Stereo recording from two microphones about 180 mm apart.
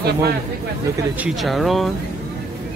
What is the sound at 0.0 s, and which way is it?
Speech, 65° right (ahead or behind).